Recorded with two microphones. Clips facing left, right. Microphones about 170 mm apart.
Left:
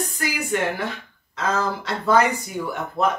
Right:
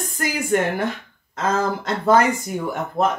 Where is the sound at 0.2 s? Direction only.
50° right (ahead or behind).